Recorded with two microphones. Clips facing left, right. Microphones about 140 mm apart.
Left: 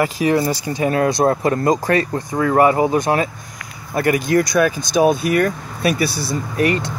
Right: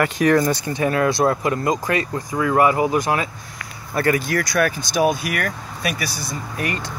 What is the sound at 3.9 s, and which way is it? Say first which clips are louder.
Speech: left 4 dB; 15° left (ahead or behind).